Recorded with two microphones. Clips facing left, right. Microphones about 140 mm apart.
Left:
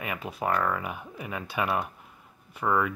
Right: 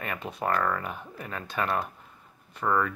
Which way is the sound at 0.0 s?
5° left (ahead or behind).